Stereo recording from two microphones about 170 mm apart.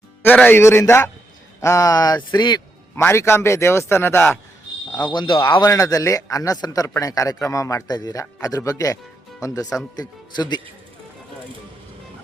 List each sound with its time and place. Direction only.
0.2 s a man's voice: 10° left (ahead or behind); by 2.6 s 25° left (ahead or behind)
2.9 s a man's voice: 15° left (ahead or behind)
5.1 s speech: 30° left (ahead or behind)